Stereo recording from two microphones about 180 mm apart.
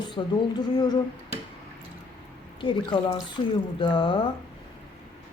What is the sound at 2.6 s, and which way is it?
Speech, 25° left (ahead or behind).